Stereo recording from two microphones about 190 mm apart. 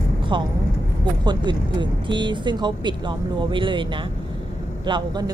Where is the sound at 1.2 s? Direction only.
25° right (ahead or behind).